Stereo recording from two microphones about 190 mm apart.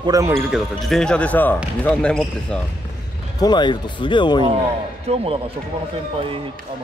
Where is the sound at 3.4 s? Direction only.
20° left (ahead or behind).